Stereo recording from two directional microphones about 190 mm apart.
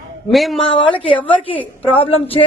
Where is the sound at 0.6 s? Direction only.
25° left (ahead or behind).